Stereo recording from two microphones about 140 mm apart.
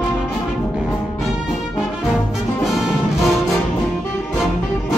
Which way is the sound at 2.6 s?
5° right (ahead or behind).